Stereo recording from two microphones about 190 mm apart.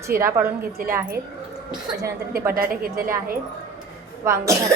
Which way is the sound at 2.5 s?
50° right (ahead or behind).